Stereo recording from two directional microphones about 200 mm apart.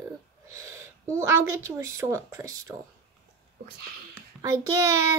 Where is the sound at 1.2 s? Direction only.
15° right (ahead or behind).